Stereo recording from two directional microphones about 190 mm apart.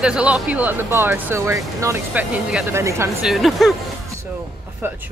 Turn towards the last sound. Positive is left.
turn(degrees=0)  # may be behind; listen again after turning